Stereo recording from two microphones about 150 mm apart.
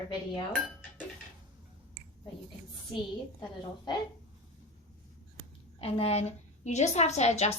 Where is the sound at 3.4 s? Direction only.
30° left (ahead or behind).